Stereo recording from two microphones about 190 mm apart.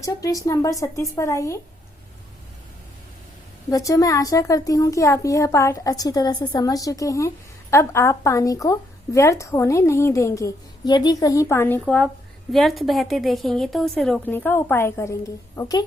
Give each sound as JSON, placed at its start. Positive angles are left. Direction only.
{"t": 0.0, "sound": "a woman's voice", "side_deg": 15}
{"t": 3.7, "sound": "a woman's voice", "side_deg": 20}